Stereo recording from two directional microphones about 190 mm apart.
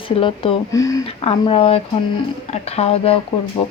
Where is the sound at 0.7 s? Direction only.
15° left (ahead or behind).